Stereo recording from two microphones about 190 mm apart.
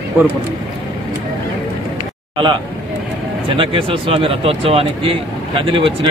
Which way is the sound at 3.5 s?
25° right (ahead or behind).